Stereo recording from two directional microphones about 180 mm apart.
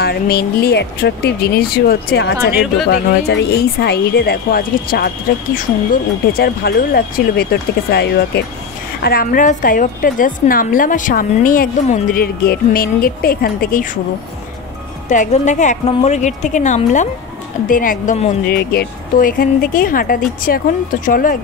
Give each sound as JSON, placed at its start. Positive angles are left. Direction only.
{"t": 0.0, "sound": "a woman's voice", "side_deg": 60}
{"t": 15.0, "sound": "a woman's voice", "side_deg": 40}
{"t": 18.5, "sound": "a woman's voice", "side_deg": 60}